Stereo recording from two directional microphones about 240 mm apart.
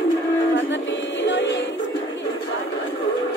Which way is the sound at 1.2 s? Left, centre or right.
Left.